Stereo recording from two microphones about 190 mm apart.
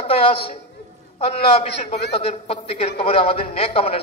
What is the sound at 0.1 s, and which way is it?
A man's voice, 30° left (ahead or behind).